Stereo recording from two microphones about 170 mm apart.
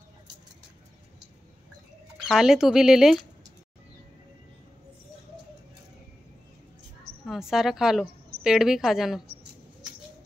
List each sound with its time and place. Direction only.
2.2 s speech: 5° right (ahead or behind)
7.2 s speech: 5° right (ahead or behind)